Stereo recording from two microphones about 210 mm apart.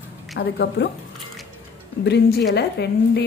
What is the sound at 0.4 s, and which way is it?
Speech, 50° left (ahead or behind).